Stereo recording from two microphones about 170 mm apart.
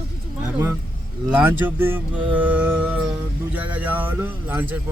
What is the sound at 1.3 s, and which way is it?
Speech, 10° right (ahead or behind).